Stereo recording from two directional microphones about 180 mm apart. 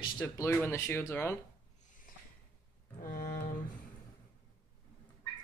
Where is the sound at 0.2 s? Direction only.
15° left (ahead or behind).